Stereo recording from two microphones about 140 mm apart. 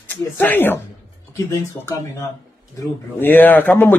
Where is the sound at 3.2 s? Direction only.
15° left (ahead or behind).